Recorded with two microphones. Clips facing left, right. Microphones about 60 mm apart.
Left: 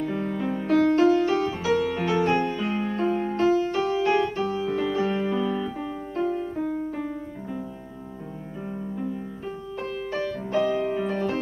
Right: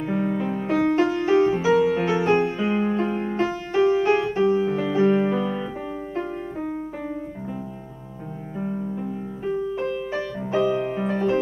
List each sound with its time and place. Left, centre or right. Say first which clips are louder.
0.0 s music: right 3 dB; right
9.8 s music: right 3 dB; centre